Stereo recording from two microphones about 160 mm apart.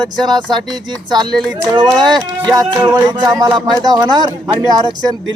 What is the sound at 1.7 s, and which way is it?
A man's voice, 25° right (ahead or behind).